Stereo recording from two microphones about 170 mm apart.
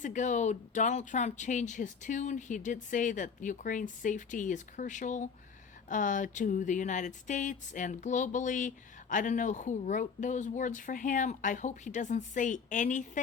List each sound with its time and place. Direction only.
0.0 s speech: 45° left (ahead or behind)